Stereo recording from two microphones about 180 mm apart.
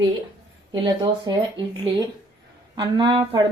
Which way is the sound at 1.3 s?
25° right (ahead or behind).